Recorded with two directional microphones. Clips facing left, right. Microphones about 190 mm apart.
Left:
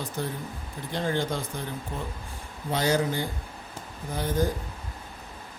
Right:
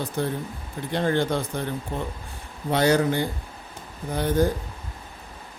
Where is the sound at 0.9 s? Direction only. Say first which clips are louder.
Right 5 dB; 60° right (ahead or behind).